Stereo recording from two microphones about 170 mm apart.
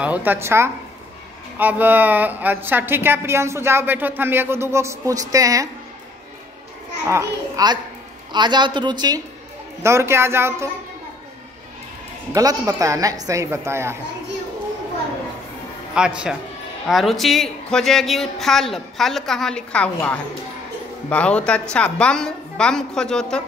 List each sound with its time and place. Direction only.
0.0 s a woman's voice: 10° right (ahead or behind)
7.1 s a woman's voice: 20° right (ahead or behind)
12.3 s speech: 20° right (ahead or behind)
15.9 s speech: 5° right (ahead or behind)